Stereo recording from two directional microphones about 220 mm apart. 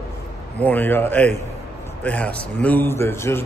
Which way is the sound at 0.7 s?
10° left (ahead or behind).